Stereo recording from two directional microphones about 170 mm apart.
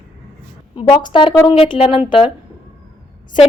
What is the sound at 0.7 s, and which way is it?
A woman's voice, 30° left (ahead or behind).